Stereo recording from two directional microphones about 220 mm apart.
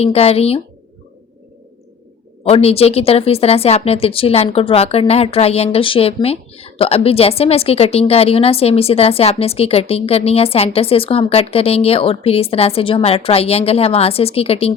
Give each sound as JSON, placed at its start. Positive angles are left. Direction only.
{"t": 0.0, "sound": "speech", "side_deg": 25}
{"t": 2.4, "sound": "speech", "side_deg": 25}